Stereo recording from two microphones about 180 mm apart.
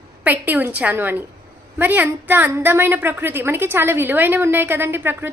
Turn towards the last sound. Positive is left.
turn(degrees=-10)  # may be behind; listen again after turning